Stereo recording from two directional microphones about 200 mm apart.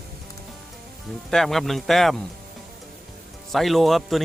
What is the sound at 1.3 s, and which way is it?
Speech, centre (ahead or behind).